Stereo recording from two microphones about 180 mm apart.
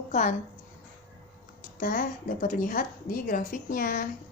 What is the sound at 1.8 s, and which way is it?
A woman's voice, 50° left (ahead or behind).